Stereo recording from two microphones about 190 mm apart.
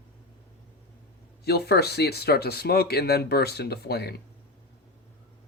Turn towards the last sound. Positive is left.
turn(degrees=60)  # may be behind; listen again after turning